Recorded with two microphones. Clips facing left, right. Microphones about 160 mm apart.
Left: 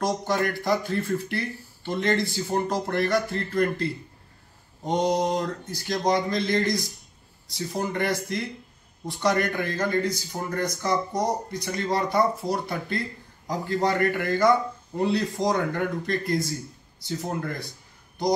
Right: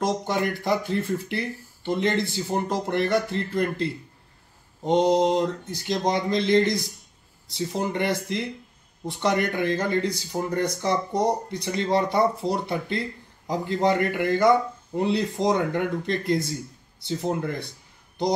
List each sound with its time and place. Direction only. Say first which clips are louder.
0.0 s speech: even; 20° right (ahead or behind)